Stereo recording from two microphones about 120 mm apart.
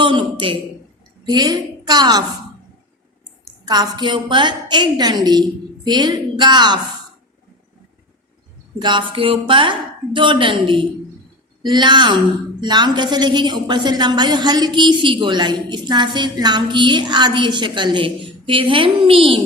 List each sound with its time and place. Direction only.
0.0 s a man's voice: 45° right (ahead or behind)
3.7 s a woman's voice: 35° right (ahead or behind)
8.8 s a woman's voice: 40° right (ahead or behind)